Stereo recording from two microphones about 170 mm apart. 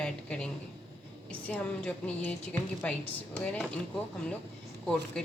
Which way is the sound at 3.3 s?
10° left (ahead or behind).